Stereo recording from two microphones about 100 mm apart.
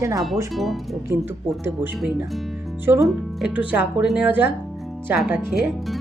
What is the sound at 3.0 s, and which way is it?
Speech, centre (ahead or behind).